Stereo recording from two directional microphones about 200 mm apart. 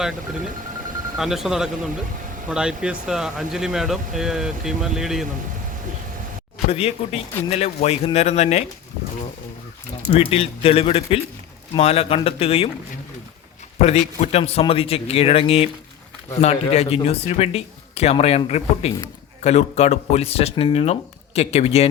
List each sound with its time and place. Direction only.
1.2 s speech: centre (ahead or behind)
6.7 s a man's voice: 30° left (ahead or behind)
10.1 s a man's voice: 30° left (ahead or behind)
13.8 s a man's voice: 30° left (ahead or behind)